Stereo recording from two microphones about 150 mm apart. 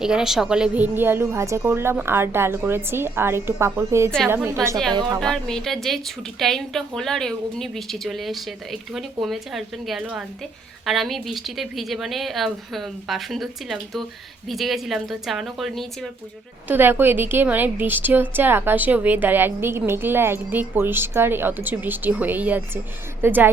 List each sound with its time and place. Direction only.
0.0 s a woman's voice: 5° right (ahead or behind)
4.9 s a woman's voice: 30° right (ahead or behind)
5.2 s a woman's voice: 5° left (ahead or behind)
16.6 s a woman's voice: 15° right (ahead or behind)